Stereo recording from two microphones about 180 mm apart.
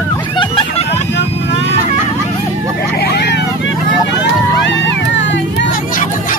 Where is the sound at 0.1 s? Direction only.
25° left (ahead or behind).